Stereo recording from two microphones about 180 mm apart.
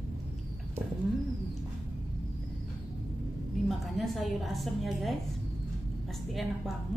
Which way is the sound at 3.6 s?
Centre (ahead or behind).